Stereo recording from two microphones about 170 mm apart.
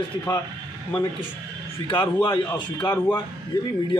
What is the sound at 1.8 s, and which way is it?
A man's voice, 30° left (ahead or behind).